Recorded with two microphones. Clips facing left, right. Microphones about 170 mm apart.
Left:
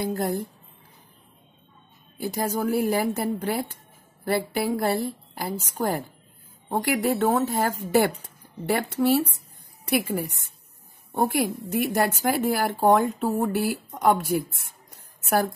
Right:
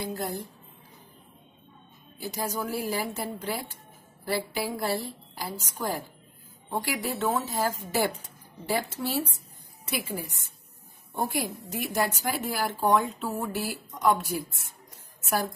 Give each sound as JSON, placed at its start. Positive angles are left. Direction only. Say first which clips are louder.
{"t": 0.0, "sound": "a woman's voice", "louder": "left 6 dB", "side_deg": 55}
{"t": 2.1, "sound": "speech", "louder": "left 5 dB", "side_deg": 55}